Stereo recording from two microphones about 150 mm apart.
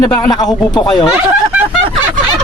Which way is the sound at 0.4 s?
Centre (ahead or behind).